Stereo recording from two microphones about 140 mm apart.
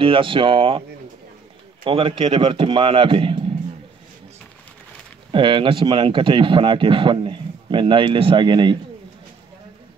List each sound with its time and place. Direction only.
0.0 s speech: 40° right (ahead or behind)
1.9 s speech: 40° right (ahead or behind)
5.3 s speech: 35° right (ahead or behind)